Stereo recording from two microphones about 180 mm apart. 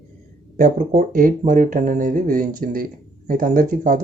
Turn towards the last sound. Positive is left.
turn(degrees=-50)  # may be behind; listen again after turning